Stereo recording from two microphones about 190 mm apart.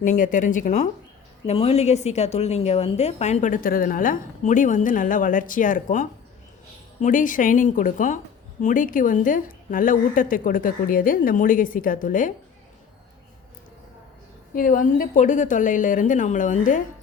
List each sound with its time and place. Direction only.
0.0 s a woman's voice: 40° left (ahead or behind)
14.5 s a woman's voice: 45° left (ahead or behind)